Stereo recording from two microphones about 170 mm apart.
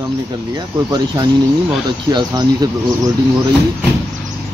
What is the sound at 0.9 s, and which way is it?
Speech, 25° right (ahead or behind).